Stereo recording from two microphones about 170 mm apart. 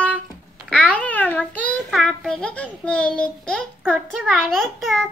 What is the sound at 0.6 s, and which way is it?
Babbling, 5° left (ahead or behind).